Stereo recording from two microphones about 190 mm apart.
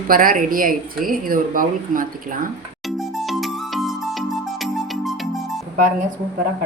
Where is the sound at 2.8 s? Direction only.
Centre (ahead or behind).